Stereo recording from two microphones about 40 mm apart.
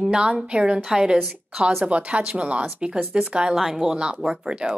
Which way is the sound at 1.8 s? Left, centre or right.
Right.